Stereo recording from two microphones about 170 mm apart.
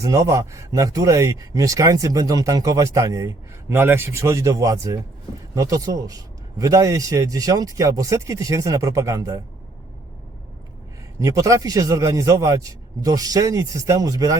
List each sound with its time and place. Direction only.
0.0 s speech: 20° right (ahead or behind)
11.2 s speech: 20° right (ahead or behind)